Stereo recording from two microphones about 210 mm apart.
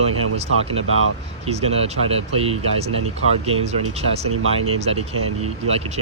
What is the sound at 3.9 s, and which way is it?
Speech, 30° right (ahead or behind).